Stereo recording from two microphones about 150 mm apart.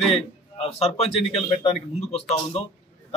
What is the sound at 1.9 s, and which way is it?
Speech, 45° left (ahead or behind).